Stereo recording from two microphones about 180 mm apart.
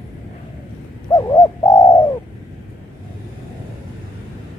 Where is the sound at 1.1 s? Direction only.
20° left (ahead or behind).